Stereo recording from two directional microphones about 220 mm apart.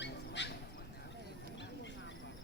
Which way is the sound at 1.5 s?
55° left (ahead or behind).